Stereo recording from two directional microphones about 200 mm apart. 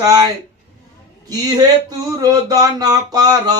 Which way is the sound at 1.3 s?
20° right (ahead or behind).